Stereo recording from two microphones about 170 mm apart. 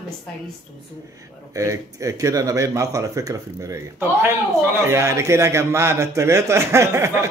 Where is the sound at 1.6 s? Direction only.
20° right (ahead or behind).